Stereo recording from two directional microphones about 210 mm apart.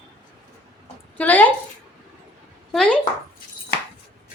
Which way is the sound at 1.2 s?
10° left (ahead or behind).